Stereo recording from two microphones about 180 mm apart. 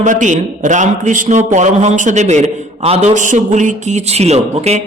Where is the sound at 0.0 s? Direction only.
45° right (ahead or behind).